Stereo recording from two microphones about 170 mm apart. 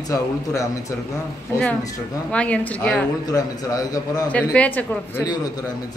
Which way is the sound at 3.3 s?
20° left (ahead or behind).